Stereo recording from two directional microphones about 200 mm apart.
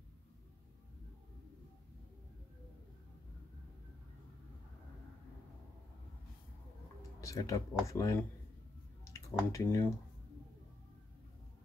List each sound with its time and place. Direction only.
7.0 s speech: 15° left (ahead or behind)